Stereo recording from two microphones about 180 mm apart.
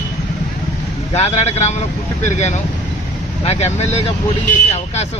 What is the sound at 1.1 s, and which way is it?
Speech, 35° left (ahead or behind).